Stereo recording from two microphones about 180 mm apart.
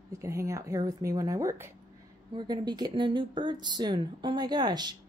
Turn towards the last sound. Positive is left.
turn(degrees=-25)  # may be behind; listen again after turning